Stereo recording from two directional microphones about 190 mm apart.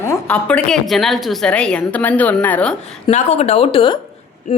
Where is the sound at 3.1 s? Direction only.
35° left (ahead or behind).